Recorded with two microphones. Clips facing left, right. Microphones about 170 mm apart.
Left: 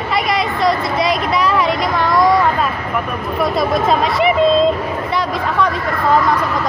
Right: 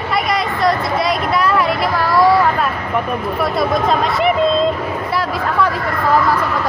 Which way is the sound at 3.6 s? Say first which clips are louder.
Left 1 dB; centre (ahead or behind).